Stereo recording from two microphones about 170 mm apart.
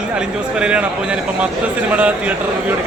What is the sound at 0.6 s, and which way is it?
Speech, 5° right (ahead or behind).